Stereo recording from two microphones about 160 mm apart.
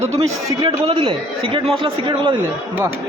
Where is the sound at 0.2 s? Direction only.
30° right (ahead or behind).